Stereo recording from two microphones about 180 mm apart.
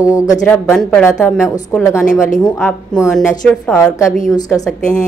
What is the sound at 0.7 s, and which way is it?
Speech, 5° left (ahead or behind).